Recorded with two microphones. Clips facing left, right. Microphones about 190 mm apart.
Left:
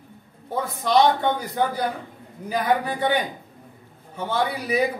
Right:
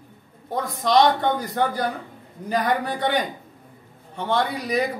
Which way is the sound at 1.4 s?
Centre (ahead or behind).